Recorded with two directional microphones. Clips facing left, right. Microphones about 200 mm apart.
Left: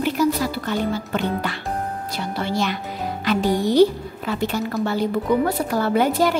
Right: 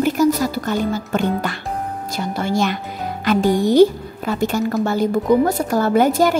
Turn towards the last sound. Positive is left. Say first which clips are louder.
# right 4 dB
turn(degrees=-45)  # may be behind; listen again after turning